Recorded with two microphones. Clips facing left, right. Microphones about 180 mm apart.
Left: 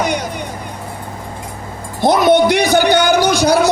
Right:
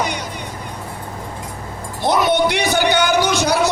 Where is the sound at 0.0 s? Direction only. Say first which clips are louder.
Left 5 dB; 45° left (ahead or behind).